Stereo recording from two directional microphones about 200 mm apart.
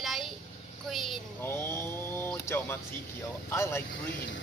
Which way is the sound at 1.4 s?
10° left (ahead or behind).